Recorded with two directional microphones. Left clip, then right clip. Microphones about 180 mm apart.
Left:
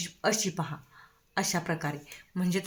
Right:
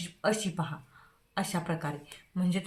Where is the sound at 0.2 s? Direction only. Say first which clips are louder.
Left 1 dB; 30° left (ahead or behind).